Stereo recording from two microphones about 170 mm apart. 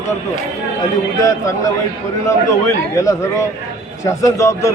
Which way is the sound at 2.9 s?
20° left (ahead or behind).